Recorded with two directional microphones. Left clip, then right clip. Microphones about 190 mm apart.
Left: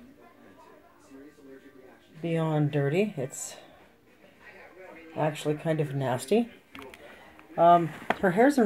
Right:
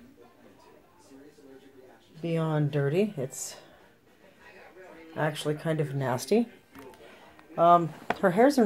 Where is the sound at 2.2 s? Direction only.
5° left (ahead or behind).